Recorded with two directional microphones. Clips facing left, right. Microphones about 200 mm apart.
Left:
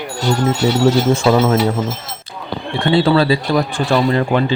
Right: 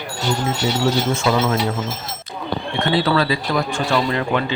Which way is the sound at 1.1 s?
30° left (ahead or behind).